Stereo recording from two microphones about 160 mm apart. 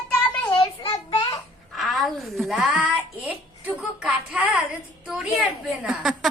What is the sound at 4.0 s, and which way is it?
A woman's voice, 10° right (ahead or behind).